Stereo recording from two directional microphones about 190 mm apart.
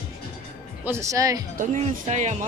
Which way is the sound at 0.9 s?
15° right (ahead or behind).